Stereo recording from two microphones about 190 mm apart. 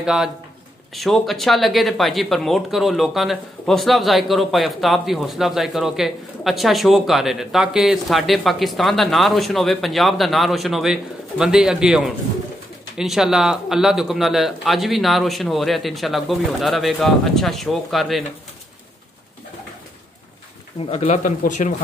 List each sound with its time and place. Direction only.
0.0 s speech: 5° right (ahead or behind)
20.8 s speech: 35° left (ahead or behind)